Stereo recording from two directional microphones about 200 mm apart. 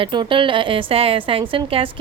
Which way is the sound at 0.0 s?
25° right (ahead or behind).